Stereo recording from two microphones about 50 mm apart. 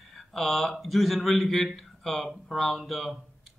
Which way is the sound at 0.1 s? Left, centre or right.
Centre.